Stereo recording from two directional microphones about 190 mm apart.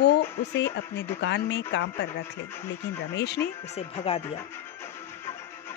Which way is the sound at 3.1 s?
65° left (ahead or behind).